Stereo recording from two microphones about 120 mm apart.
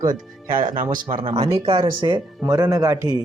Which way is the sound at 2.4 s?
30° right (ahead or behind).